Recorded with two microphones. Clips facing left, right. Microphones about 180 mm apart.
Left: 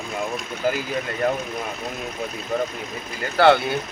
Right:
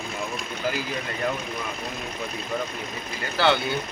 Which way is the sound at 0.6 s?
50° left (ahead or behind).